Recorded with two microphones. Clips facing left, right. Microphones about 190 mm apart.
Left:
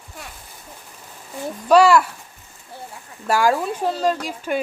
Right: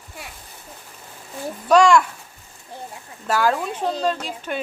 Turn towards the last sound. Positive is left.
turn(degrees=10)  # may be behind; listen again after turning